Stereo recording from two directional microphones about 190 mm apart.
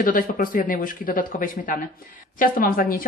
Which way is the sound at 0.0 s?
45° left (ahead or behind).